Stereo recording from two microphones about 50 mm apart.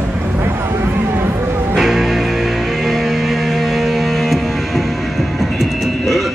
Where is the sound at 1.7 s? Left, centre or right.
Centre.